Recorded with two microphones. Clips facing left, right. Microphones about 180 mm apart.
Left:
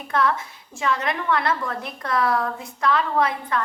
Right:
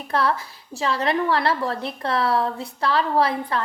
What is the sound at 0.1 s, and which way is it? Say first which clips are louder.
A woman's voice: even; 35° right (ahead or behind).